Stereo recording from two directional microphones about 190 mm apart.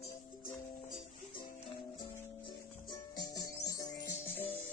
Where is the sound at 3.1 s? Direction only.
20° left (ahead or behind).